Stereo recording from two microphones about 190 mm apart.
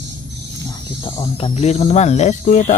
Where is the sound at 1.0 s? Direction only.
30° left (ahead or behind).